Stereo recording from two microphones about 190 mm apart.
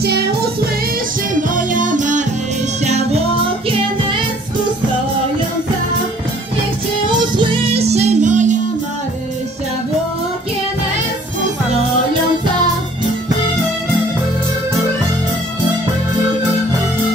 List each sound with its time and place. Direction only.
1.5 s music: 45° right (ahead or behind)
7.1 s music: 25° right (ahead or behind)